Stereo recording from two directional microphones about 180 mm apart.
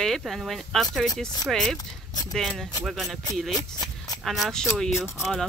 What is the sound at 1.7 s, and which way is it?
Speech, 20° left (ahead or behind).